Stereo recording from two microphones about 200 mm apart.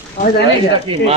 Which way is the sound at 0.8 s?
25° right (ahead or behind).